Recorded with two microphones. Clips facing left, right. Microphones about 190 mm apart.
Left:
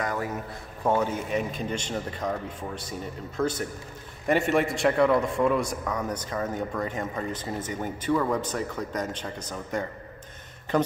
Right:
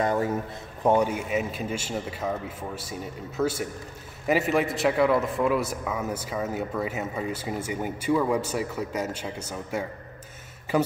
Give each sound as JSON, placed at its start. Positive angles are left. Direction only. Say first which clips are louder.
{"t": 0.0, "sound": "a man's voice", "louder": "right 5 dB", "side_deg": -25}
{"t": 0.8, "sound": "a man's voice", "louder": "right 3 dB", "side_deg": -15}